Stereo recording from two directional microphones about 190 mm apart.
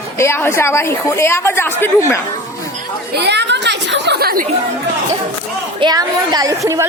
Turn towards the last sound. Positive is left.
turn(degrees=-15)  # may be behind; listen again after turning